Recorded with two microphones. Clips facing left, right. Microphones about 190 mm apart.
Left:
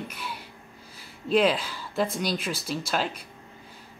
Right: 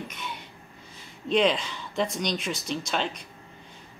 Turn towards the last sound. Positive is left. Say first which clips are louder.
# left 1 dB
turn(degrees=5)  # may be behind; listen again after turning